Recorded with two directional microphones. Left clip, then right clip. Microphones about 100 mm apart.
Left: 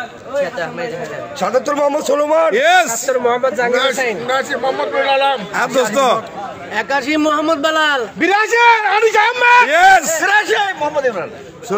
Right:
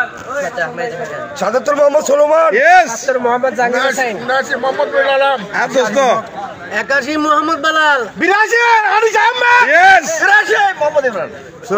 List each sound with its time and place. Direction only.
1.4 s a man's voice: 15° left (ahead or behind)
6.7 s a man's voice: 15° left (ahead or behind)
9.7 s a man's voice: 10° left (ahead or behind)
10.2 s a man's voice: 25° left (ahead or behind)